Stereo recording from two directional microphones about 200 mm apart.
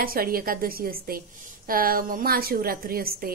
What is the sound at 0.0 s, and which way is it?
A woman's voice, 45° right (ahead or behind).